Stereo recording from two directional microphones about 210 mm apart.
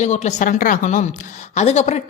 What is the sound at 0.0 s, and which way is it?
Speech, 35° left (ahead or behind).